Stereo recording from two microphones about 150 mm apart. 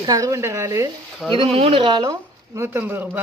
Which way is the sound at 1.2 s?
Centre (ahead or behind).